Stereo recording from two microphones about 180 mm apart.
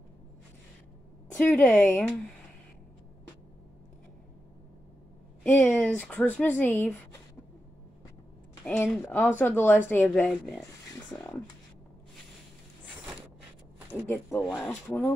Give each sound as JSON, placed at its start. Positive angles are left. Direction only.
{"t": 1.3, "sound": "speech", "side_deg": 10}
{"t": 5.4, "sound": "speech", "side_deg": 10}
{"t": 8.6, "sound": "speech", "side_deg": 10}
{"t": 14.0, "sound": "speech", "side_deg": 10}